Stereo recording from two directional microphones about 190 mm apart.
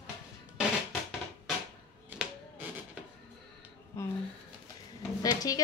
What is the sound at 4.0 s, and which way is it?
Speech, 15° left (ahead or behind).